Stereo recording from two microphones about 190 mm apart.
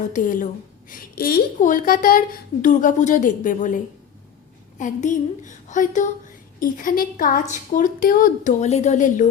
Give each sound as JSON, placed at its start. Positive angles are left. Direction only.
{"t": 0.0, "sound": "a woman's voice", "side_deg": 40}
{"t": 4.8, "sound": "a woman's voice", "side_deg": 40}